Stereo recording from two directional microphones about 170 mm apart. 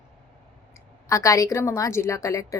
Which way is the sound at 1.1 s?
20° left (ahead or behind).